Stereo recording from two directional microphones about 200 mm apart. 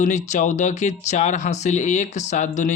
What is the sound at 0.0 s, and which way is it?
Speech, 35° left (ahead or behind).